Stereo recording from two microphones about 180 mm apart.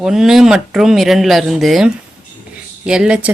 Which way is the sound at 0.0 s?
Centre (ahead or behind).